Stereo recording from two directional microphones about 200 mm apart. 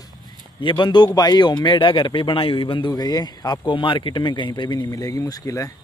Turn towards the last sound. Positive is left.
turn(degrees=15)  # may be behind; listen again after turning